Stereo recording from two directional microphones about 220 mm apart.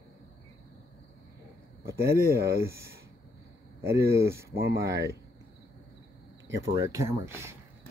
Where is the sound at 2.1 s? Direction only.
45° right (ahead or behind).